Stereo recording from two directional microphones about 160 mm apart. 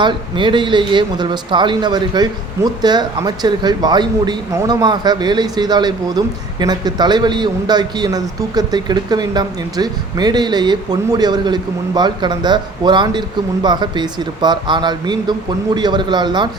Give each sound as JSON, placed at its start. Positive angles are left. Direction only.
{"t": 0.0, "sound": "speech", "side_deg": -30}